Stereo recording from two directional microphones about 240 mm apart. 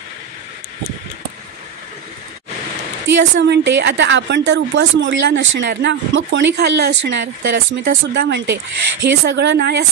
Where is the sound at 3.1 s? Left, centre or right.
Right.